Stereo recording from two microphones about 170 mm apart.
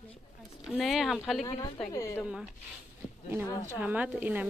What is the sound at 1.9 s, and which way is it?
Speech, 20° left (ahead or behind).